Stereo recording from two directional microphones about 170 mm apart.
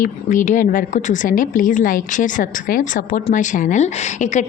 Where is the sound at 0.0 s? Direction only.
50° left (ahead or behind).